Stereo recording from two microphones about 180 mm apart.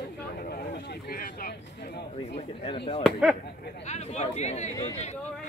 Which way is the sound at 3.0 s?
Centre (ahead or behind).